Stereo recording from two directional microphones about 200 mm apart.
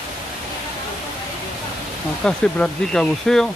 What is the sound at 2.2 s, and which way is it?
Speech, 5° left (ahead or behind).